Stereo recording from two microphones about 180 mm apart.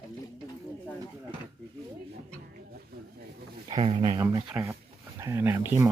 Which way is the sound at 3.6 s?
30° right (ahead or behind).